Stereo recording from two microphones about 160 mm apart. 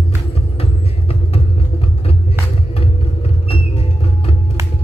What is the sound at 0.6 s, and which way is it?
Vehicle, 40° left (ahead or behind).